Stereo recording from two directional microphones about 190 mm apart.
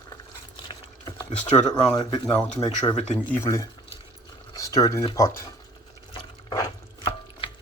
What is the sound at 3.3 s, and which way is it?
Speech, 15° left (ahead or behind).